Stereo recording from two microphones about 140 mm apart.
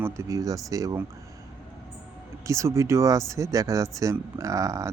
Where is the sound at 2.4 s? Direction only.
20° right (ahead or behind).